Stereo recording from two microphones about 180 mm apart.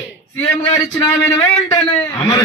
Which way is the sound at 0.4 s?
30° left (ahead or behind).